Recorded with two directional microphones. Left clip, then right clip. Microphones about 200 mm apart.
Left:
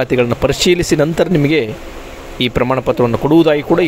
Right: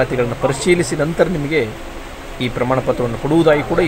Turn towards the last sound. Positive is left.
turn(degrees=45)  # may be behind; listen again after turning